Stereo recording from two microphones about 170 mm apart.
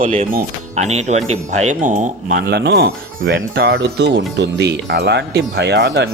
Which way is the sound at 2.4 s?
75° right (ahead or behind).